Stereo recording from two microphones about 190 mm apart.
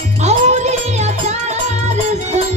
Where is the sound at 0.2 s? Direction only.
35° right (ahead or behind).